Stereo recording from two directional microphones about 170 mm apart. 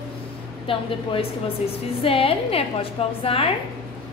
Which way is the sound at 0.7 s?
30° left (ahead or behind).